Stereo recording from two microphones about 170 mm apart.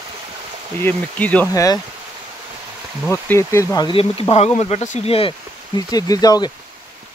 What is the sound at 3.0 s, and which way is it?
Speech, 15° left (ahead or behind).